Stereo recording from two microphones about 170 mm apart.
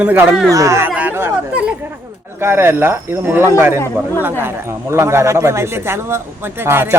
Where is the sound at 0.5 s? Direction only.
15° right (ahead or behind).